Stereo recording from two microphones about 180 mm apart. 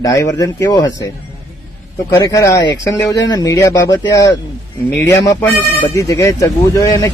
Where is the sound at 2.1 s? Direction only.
20° left (ahead or behind).